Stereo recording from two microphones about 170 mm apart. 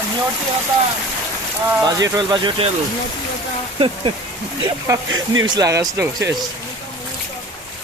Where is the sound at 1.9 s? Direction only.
25° right (ahead or behind).